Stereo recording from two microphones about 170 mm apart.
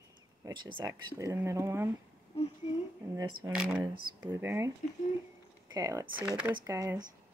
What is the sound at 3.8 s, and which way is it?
Speech, 25° right (ahead or behind).